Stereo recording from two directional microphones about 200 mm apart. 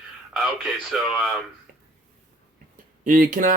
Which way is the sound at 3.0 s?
45° right (ahead or behind).